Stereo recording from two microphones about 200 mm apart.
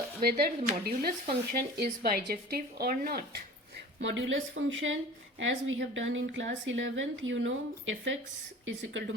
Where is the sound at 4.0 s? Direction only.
65° right (ahead or behind).